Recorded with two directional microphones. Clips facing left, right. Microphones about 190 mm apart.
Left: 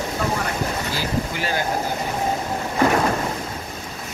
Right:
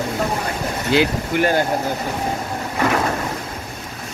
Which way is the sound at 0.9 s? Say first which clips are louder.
Right 7 dB; 55° right (ahead or behind).